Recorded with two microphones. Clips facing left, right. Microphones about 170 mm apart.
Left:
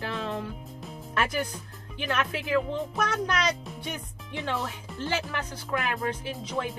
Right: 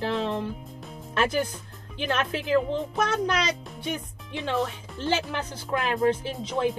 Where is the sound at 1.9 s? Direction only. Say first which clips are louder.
Right 2 dB; 30° right (ahead or behind).